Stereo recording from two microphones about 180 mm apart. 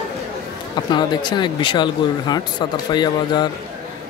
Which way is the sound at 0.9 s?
25° left (ahead or behind).